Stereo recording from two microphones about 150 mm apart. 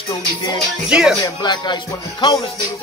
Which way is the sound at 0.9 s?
5° right (ahead or behind).